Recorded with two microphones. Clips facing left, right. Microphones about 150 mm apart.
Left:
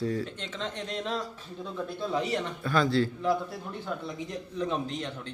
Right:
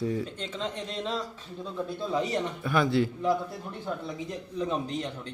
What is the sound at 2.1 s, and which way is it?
A man's voice, 20° right (ahead or behind).